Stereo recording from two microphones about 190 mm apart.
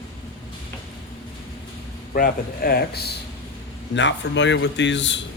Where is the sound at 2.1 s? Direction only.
50° left (ahead or behind).